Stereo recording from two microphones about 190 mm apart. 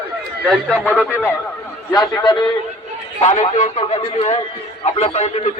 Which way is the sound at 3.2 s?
35° left (ahead or behind).